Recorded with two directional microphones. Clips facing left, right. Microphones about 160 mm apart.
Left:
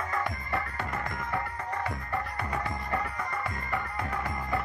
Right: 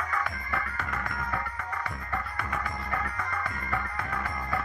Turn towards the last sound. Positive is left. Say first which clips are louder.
# even
turn(degrees=25)  # may be behind; listen again after turning